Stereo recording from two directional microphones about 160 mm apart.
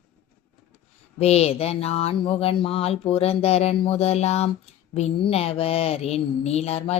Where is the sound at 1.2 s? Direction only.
40° left (ahead or behind).